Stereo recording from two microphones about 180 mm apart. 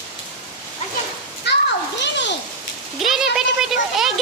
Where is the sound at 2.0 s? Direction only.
75° left (ahead or behind).